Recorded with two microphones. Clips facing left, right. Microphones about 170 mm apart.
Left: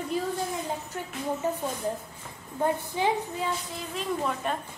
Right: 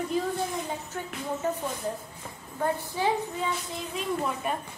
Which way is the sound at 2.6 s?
10° left (ahead or behind).